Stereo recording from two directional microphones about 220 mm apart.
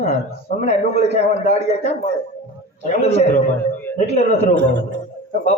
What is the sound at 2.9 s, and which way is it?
A man's voice, 30° left (ahead or behind).